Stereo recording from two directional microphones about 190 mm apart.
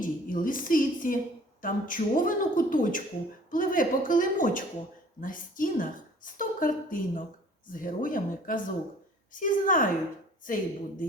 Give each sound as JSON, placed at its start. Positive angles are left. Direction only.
{"t": 0.0, "sound": "a woman's voice", "side_deg": 45}